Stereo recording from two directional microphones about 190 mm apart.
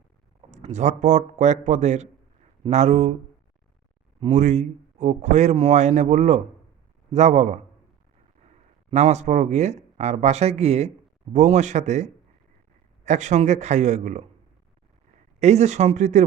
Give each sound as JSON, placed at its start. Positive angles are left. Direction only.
{"t": 0.5, "sound": "a man's voice", "side_deg": -35}
{"t": 4.2, "sound": "a man's voice", "side_deg": -35}
{"t": 15.4, "sound": "a man's voice", "side_deg": -35}